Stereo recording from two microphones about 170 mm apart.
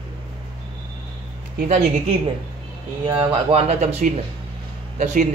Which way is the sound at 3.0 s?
30° right (ahead or behind).